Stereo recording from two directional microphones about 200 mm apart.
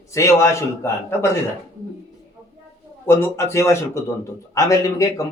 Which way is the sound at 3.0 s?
10° left (ahead or behind).